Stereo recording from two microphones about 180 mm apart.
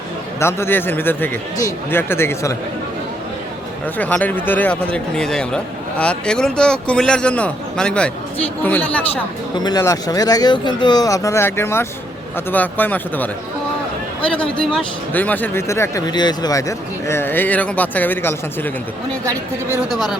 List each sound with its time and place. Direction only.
0.3 s speech: 15° left (ahead or behind)
3.9 s a man's voice: 10° left (ahead or behind)
9.6 s a man's voice: 20° left (ahead or behind)
19.2 s speech: 15° right (ahead or behind)